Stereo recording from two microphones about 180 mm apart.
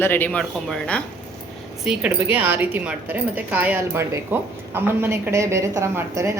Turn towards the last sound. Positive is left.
turn(degrees=-15)  # may be behind; listen again after turning